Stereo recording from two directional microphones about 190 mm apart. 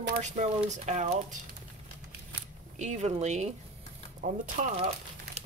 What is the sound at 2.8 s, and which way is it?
Speech, 35° right (ahead or behind).